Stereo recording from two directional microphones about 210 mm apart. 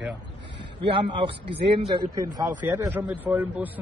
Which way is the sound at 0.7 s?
25° right (ahead or behind).